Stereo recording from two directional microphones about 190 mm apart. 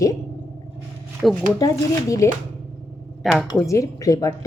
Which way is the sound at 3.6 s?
15° left (ahead or behind).